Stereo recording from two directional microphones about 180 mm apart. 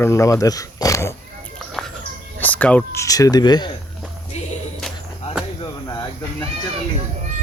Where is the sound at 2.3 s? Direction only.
10° left (ahead or behind).